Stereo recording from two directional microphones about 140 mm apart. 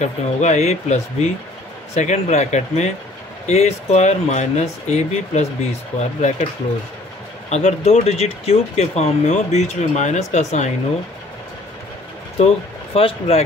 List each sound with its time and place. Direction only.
0.0 s speech: 55° left (ahead or behind)
7.4 s speech: 55° left (ahead or behind)
12.4 s speech: 45° left (ahead or behind)